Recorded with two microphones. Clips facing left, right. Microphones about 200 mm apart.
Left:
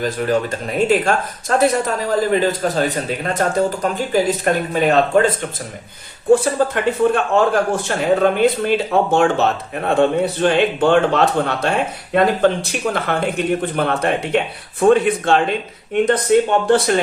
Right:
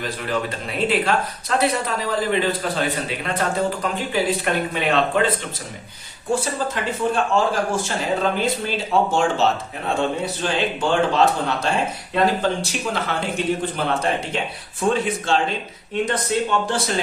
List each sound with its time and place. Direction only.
0.0 s speech: 45° left (ahead or behind)
6.3 s speech: 60° left (ahead or behind)